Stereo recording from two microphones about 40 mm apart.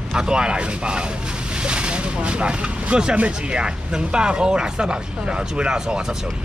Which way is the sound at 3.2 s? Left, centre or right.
Right.